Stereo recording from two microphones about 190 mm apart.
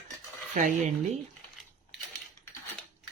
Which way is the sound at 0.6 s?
45° right (ahead or behind).